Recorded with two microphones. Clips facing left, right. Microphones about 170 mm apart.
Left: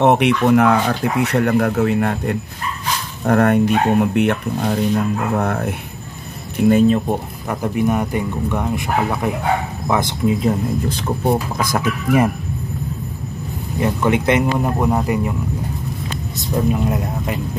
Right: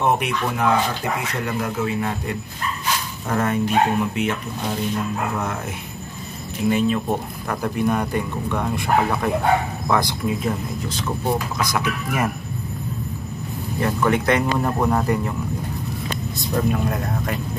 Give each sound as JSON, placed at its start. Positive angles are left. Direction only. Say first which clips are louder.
{"t": 0.0, "sound": "speech", "louder": "left 7 dB", "side_deg": 70}
{"t": 7.4, "sound": "speech", "louder": "left 3 dB", "side_deg": 15}
{"t": 10.9, "sound": "speech", "louder": "left 2 dB", "side_deg": 60}
{"t": 13.7, "sound": "speech", "louder": "left 3 dB", "side_deg": 20}
{"t": 16.3, "sound": "speech", "louder": "left 3 dB", "side_deg": 20}